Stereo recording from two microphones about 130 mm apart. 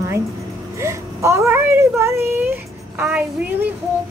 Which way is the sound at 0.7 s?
20° right (ahead or behind).